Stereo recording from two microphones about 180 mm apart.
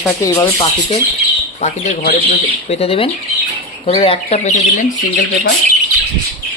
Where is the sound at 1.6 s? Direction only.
40° left (ahead or behind).